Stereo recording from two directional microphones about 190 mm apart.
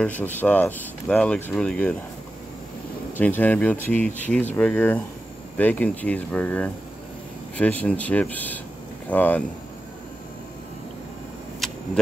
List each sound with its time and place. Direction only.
0.0 s speech: 10° left (ahead or behind)
3.2 s speech: 10° left (ahead or behind)
11.6 s a sound: centre (ahead or behind)